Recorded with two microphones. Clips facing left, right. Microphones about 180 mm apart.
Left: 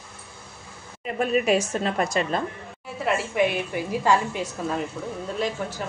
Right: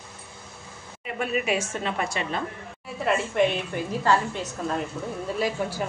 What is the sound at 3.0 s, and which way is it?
A woman's voice, 5° left (ahead or behind).